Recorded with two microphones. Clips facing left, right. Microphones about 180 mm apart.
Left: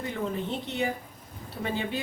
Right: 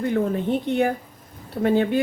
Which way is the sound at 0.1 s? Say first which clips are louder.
Right 9 dB; 55° right (ahead or behind).